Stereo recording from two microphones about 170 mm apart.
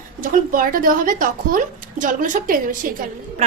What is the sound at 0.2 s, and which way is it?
A woman's voice, 55° right (ahead or behind).